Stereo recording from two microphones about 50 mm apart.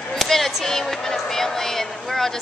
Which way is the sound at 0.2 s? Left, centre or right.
Centre.